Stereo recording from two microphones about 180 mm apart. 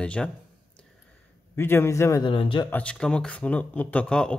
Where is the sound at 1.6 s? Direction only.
15° left (ahead or behind).